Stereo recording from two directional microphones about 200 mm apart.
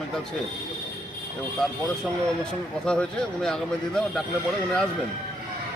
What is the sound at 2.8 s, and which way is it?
Speech, 5° left (ahead or behind).